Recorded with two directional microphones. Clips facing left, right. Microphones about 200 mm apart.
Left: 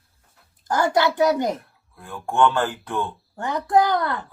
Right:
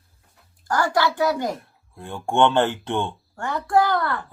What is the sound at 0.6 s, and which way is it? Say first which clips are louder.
Speech: left 1 dB; 20° left (ahead or behind).